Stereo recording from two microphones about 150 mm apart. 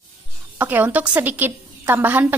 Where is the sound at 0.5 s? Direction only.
10° right (ahead or behind).